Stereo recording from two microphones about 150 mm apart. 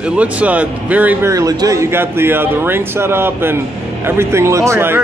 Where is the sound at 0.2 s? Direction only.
10° right (ahead or behind).